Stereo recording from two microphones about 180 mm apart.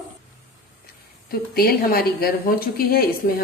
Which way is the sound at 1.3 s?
55° left (ahead or behind).